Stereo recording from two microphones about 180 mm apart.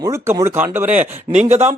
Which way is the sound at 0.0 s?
15° right (ahead or behind).